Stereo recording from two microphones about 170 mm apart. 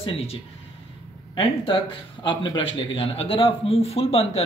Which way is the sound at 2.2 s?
30° left (ahead or behind).